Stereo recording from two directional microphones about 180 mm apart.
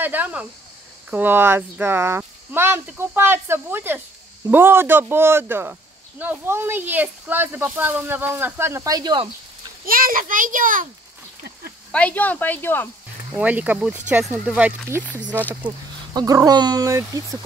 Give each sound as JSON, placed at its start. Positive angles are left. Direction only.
{"t": 0.0, "sound": "speech", "side_deg": -10}
{"t": 9.8, "sound": "a child's voice", "side_deg": -50}
{"t": 11.9, "sound": "speech", "side_deg": 5}
{"t": 13.3, "sound": "speech", "side_deg": -10}
{"t": 16.1, "sound": "speech", "side_deg": -20}